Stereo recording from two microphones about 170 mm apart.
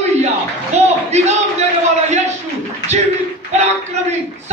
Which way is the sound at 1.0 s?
40° right (ahead or behind).